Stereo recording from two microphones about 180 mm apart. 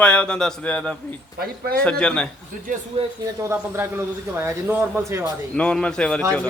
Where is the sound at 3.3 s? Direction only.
15° right (ahead or behind).